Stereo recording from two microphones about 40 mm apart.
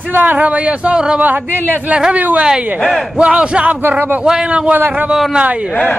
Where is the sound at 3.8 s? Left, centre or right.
Right.